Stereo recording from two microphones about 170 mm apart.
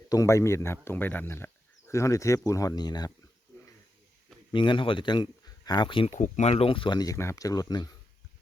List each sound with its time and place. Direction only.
0.1 s speech: 20° left (ahead or behind)
4.5 s speech: 30° left (ahead or behind)
6.1 s speech: 45° left (ahead or behind); by 7.9 s 20° left (ahead or behind)